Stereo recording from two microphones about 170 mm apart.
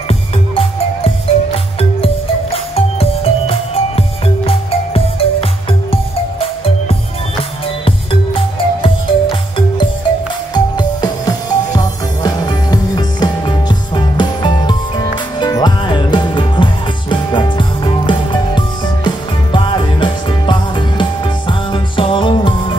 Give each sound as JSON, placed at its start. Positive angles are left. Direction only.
{"t": 0.1, "sound": "music", "side_deg": 35}
{"t": 7.8, "sound": "music", "side_deg": 30}